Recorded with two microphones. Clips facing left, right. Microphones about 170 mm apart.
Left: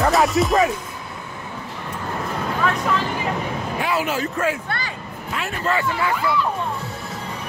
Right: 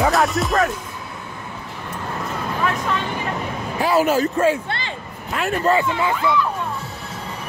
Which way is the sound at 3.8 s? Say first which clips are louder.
Right 7 dB; 40° right (ahead or behind).